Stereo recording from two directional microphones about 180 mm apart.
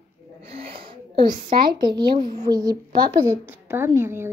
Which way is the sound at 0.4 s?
35° right (ahead or behind).